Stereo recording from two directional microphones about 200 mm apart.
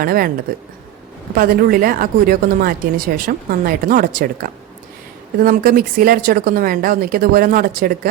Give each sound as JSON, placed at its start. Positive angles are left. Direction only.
{"t": 0.0, "sound": "speech", "side_deg": -45}
{"t": 1.4, "sound": "speech", "side_deg": -45}